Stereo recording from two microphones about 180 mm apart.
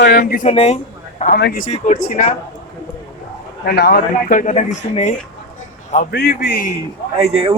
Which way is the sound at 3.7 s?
60° left (ahead or behind).